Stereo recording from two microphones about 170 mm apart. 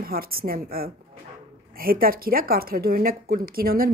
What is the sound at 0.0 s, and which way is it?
A woman's voice, 60° right (ahead or behind).